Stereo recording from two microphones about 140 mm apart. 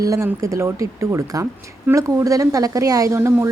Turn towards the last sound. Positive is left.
turn(degrees=-20)  # may be behind; listen again after turning